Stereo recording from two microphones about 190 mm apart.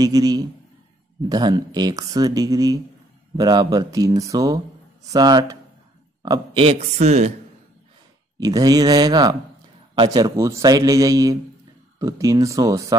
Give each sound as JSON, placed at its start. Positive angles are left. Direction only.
{"t": 0.0, "sound": "a man's voice", "side_deg": -20}
{"t": 8.4, "sound": "speech", "side_deg": -20}